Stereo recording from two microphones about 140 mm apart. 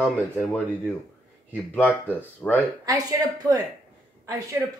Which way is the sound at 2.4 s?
10° left (ahead or behind).